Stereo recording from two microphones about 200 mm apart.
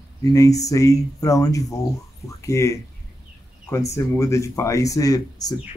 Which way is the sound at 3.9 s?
15° left (ahead or behind).